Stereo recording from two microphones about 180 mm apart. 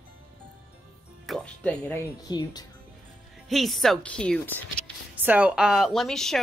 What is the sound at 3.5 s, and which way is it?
Speech, centre (ahead or behind).